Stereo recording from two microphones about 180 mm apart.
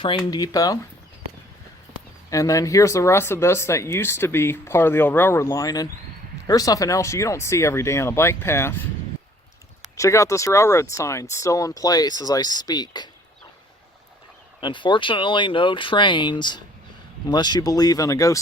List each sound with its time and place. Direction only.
0.3 s speech: 20° left (ahead or behind)
2.3 s speech: 20° left (ahead or behind)
10.0 s speech: 15° left (ahead or behind)
14.6 s speech: 25° left (ahead or behind)